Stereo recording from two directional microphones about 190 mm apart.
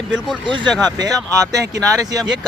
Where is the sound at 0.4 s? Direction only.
25° right (ahead or behind).